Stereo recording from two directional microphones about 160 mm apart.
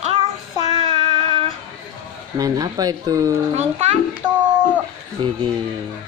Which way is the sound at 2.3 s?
20° right (ahead or behind).